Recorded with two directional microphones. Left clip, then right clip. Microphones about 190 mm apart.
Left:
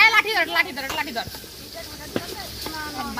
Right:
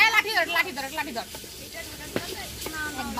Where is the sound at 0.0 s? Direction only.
20° right (ahead or behind).